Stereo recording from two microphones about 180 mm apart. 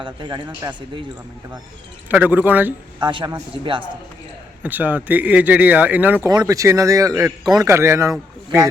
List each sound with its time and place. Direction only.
0.0 s a man's voice: 25° right (ahead or behind)
0.4 s a man's voice: 10° right (ahead or behind)
2.0 s a man's voice: 10° right (ahead or behind)
3.0 s a man's voice: 25° right (ahead or behind)
4.6 s a man's voice: 10° right (ahead or behind)